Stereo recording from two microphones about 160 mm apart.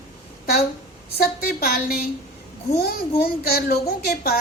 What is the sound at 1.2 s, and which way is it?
A woman's voice, 65° left (ahead or behind).